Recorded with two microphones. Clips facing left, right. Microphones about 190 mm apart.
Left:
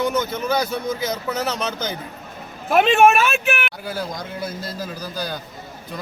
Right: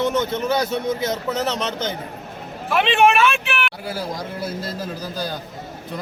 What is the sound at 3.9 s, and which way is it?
Speech, 5° right (ahead or behind).